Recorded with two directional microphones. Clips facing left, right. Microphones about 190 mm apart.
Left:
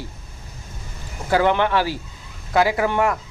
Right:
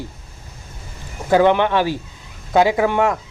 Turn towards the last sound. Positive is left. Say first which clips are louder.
# right 3 dB
turn(degrees=-20)  # may be behind; listen again after turning